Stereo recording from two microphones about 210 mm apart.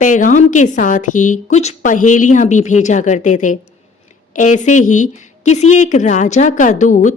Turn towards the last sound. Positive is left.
turn(degrees=35)  # may be behind; listen again after turning